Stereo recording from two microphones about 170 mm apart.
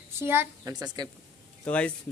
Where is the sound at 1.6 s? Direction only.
5° left (ahead or behind).